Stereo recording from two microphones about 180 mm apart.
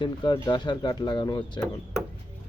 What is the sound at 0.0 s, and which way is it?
Speech, 25° left (ahead or behind).